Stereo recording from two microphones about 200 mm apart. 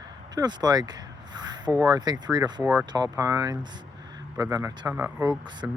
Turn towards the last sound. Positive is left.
turn(degrees=-10)  # may be behind; listen again after turning